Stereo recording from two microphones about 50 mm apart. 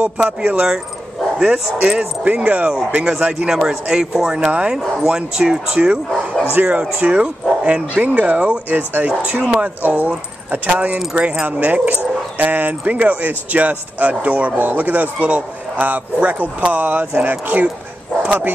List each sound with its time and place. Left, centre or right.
0.4 s speech: right
3.4 s speech: centre
4.5 s speech: right
4.9 s speech: centre
6.5 s speech: right
7.0 s speech: right
8.6 s speech: right
9.4 s speech: right
9.8 s speech: right